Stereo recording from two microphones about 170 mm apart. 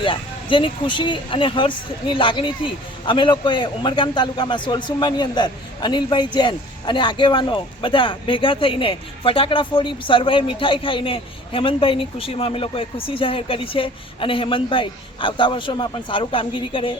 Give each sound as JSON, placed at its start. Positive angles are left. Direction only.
{"t": 0.0, "sound": "speech", "side_deg": 30}